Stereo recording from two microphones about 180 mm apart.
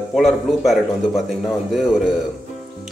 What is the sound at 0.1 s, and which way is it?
A man's voice, centre (ahead or behind).